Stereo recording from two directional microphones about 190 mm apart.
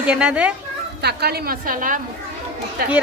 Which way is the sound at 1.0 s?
55° right (ahead or behind).